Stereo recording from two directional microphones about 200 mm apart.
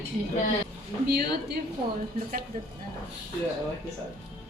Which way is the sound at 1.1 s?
50° right (ahead or behind).